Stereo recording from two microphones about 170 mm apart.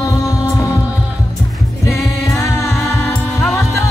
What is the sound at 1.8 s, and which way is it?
Music, 15° left (ahead or behind).